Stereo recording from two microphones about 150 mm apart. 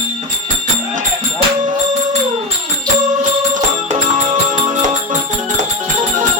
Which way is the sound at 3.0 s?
60° right (ahead or behind).